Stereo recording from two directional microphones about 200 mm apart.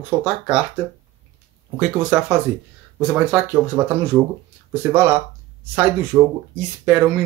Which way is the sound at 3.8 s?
25° right (ahead or behind).